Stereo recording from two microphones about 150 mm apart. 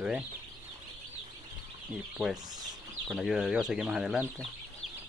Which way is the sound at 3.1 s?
Centre (ahead or behind).